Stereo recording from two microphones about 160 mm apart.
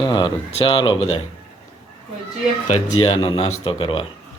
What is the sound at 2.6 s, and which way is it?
A man's voice, 40° left (ahead or behind).